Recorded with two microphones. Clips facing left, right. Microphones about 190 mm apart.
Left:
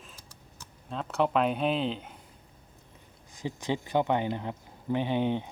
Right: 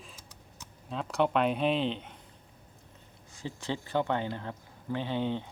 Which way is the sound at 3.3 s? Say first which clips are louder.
Left 4 dB; 15° left (ahead or behind).